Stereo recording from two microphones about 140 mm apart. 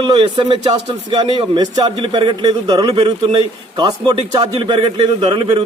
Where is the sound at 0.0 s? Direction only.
35° right (ahead or behind).